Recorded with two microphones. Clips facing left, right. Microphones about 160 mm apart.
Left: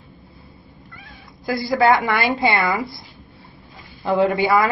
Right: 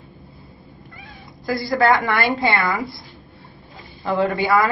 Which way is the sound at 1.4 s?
10° left (ahead or behind).